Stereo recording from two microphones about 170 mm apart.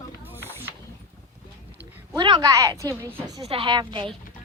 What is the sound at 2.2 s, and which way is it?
A woman's voice, 25° right (ahead or behind).